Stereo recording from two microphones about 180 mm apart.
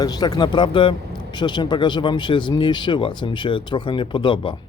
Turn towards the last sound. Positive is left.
turn(degrees=25)  # may be behind; listen again after turning